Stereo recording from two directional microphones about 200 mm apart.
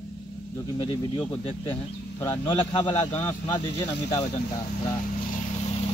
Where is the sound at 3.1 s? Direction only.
10° left (ahead or behind).